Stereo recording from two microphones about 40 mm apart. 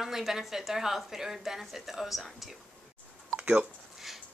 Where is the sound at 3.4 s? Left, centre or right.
Right.